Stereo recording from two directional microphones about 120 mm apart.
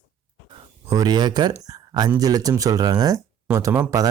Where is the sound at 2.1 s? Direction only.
30° right (ahead or behind).